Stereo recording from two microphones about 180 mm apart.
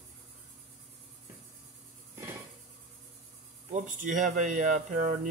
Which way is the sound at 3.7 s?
45° right (ahead or behind).